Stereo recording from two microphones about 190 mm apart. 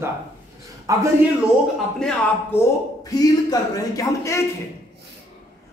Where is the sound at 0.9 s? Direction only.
15° right (ahead or behind).